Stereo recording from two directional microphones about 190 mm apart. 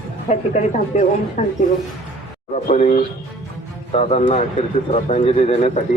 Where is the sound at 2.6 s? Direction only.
40° left (ahead or behind).